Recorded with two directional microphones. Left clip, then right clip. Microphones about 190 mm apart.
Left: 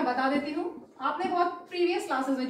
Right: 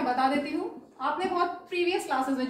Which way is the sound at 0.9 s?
5° left (ahead or behind).